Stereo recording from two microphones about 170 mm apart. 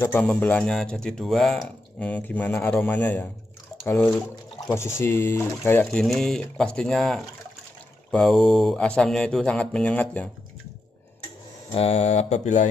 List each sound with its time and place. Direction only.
0.0 s speech: 10° left (ahead or behind)
4.6 s speech: 15° left (ahead or behind)
5.9 s speech: 5° left (ahead or behind)
11.7 s speech: 35° left (ahead or behind)